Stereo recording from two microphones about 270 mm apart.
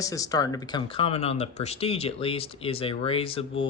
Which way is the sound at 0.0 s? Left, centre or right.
Centre.